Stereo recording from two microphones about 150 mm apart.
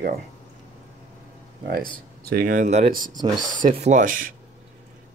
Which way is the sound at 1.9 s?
90° right.